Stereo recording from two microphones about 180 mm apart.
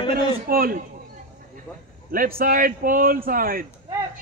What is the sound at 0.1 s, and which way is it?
Speech, 55° right (ahead or behind).